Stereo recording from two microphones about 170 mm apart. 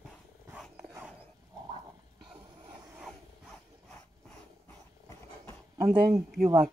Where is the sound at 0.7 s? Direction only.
10° right (ahead or behind).